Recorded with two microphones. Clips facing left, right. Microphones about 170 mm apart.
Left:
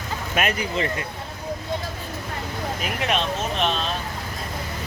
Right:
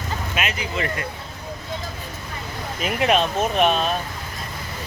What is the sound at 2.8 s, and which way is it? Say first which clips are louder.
Speech: right 7 dB; 5° right (ahead or behind).